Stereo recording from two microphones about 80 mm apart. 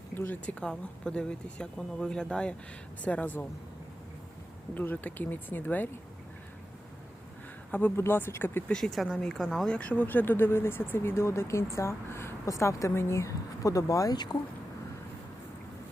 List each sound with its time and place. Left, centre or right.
0.1 s speech: left
0.6 s speech: centre
4.7 s speech: left
7.7 s speech: left
8.6 s speech: centre
9.7 s speech: centre; by 14.2 s left